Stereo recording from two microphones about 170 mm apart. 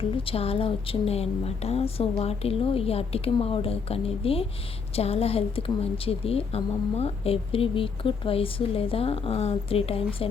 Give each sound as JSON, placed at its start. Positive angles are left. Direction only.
{"t": 0.0, "sound": "a woman's voice", "side_deg": 35}